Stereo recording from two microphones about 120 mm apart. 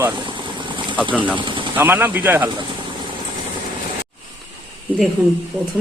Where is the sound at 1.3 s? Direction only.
45° right (ahead or behind).